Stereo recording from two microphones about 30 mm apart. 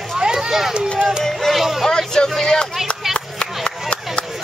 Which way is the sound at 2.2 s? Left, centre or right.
Left.